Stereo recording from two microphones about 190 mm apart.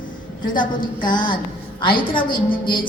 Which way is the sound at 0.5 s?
25° left (ahead or behind).